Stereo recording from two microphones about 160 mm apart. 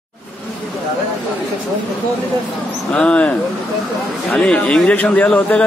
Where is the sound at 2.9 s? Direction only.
5° left (ahead or behind).